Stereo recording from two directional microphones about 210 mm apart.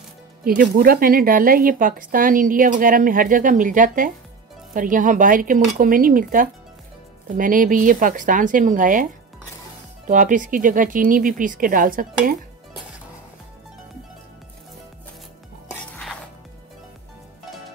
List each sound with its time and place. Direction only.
0.6 s speech: 45° right (ahead or behind)
15.7 s music: centre (ahead or behind)